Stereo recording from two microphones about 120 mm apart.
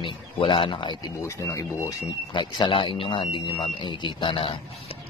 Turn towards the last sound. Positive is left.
turn(degrees=45)  # may be behind; listen again after turning